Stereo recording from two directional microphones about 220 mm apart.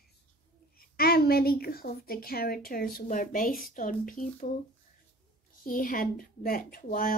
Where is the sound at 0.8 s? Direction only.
45° left (ahead or behind).